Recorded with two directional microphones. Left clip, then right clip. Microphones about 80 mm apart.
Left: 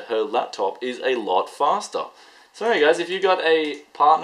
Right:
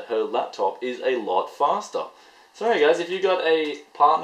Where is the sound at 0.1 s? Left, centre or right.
Left.